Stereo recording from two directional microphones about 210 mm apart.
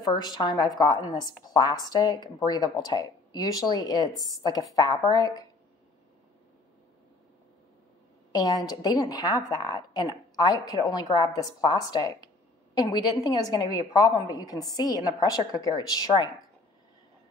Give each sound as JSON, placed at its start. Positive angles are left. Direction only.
{"t": 0.0, "sound": "a woman's voice", "side_deg": 20}
{"t": 8.3, "sound": "a woman's voice", "side_deg": 15}